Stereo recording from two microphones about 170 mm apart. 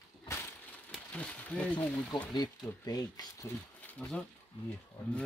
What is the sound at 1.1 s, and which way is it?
Speech, 5° left (ahead or behind).